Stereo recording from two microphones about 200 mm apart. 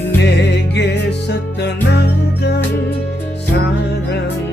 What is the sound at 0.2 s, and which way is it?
Music, 60° left (ahead or behind).